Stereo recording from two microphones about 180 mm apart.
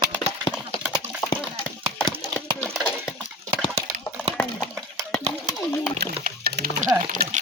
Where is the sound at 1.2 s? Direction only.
25° left (ahead or behind).